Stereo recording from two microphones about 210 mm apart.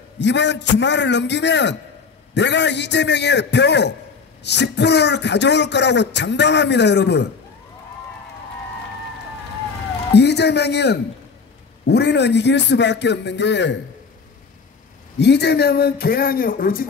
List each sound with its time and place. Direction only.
0.2 s speech: 55° left (ahead or behind)
10.1 s speech: 50° left (ahead or behind)
15.1 s speech: 55° left (ahead or behind)